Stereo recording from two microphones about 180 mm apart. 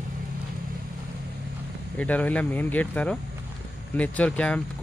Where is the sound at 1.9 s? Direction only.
10° left (ahead or behind).